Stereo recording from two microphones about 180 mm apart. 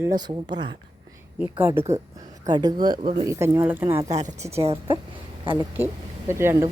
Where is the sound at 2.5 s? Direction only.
20° right (ahead or behind).